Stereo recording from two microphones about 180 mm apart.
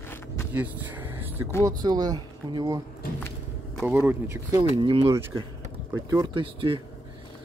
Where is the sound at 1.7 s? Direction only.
20° right (ahead or behind).